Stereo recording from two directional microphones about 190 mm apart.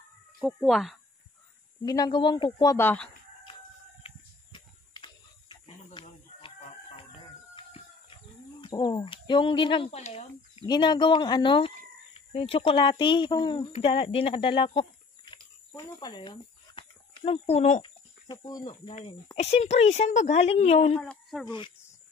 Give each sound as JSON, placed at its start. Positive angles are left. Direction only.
{"t": 0.4, "sound": "speech", "side_deg": 0}
{"t": 1.8, "sound": "speech", "side_deg": 20}
{"t": 4.0, "sound": "a sound", "side_deg": 25}
{"t": 7.5, "sound": "speech", "side_deg": 25}
{"t": 18.3, "sound": "speech", "side_deg": 20}
{"t": 21.0, "sound": "speech", "side_deg": 0}
{"t": 21.5, "sound": "speech", "side_deg": 25}